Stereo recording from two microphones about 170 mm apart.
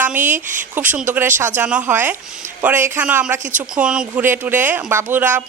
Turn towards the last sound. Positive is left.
turn(degrees=-10)  # may be behind; listen again after turning